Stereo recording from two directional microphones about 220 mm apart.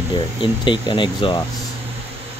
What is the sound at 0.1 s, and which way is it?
Speech, 20° left (ahead or behind).